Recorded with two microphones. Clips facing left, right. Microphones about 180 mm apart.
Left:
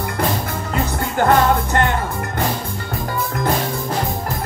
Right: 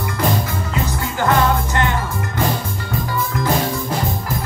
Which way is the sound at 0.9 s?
55° left (ahead or behind).